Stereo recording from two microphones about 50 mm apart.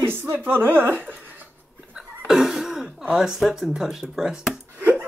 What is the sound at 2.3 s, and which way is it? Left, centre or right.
Speech, centre.